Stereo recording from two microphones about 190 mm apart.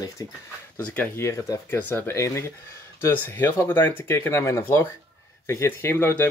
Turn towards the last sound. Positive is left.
turn(degrees=10)  # may be behind; listen again after turning